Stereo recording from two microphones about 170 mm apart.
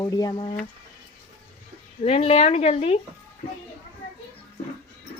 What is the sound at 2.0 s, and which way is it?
Speech, 35° left (ahead or behind).